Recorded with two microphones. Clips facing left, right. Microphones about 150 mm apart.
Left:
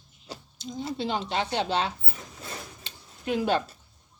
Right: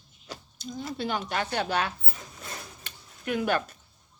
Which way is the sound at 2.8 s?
25° left (ahead or behind).